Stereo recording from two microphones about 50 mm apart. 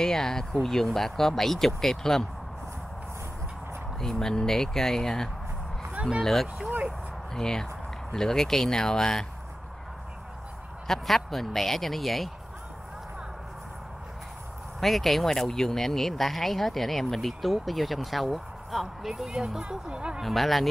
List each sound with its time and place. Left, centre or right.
0.0 s speech: centre
4.0 s speech: centre
10.9 s speech: centre
14.8 s speech: centre
19.6 s speech: right
20.2 s speech: centre